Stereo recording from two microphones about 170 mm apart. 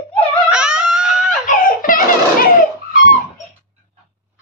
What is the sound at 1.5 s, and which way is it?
Baby laughter, 55° left (ahead or behind).